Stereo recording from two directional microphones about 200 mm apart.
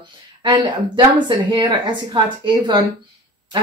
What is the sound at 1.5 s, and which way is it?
Speech, 20° right (ahead or behind).